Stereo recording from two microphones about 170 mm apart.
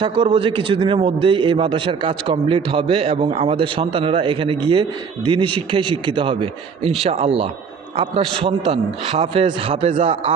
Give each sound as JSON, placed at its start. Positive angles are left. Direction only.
{"t": 0.0, "sound": "a man's voice", "side_deg": -25}